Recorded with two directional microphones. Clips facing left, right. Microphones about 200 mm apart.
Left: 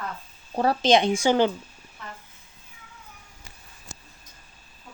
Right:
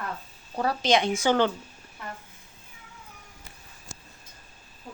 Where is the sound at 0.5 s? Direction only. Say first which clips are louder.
Left 4 dB; 30° left (ahead or behind); by 1.5 s 15° left (ahead or behind).